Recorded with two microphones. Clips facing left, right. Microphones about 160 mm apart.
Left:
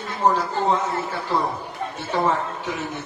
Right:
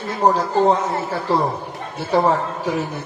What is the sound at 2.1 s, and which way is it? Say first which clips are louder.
Speech: right 5 dB; 35° right (ahead or behind).